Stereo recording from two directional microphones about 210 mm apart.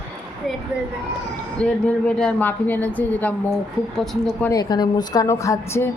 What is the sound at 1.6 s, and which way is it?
A woman's voice, 5° left (ahead or behind).